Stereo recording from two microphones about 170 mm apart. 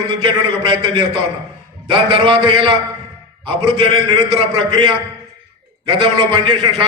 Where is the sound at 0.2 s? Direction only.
30° right (ahead or behind).